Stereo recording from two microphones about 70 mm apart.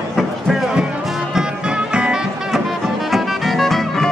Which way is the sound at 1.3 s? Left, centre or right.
Centre.